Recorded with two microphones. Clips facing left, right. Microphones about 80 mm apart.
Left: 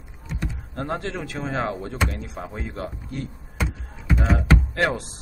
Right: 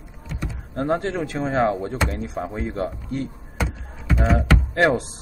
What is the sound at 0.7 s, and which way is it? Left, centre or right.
Speech, centre.